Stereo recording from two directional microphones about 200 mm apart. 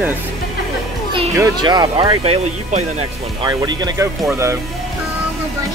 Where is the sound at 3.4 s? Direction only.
20° right (ahead or behind).